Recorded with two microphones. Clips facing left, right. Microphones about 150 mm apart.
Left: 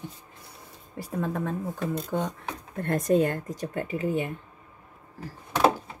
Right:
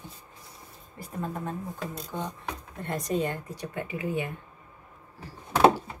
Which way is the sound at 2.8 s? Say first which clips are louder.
Left 6 dB; 50° left (ahead or behind).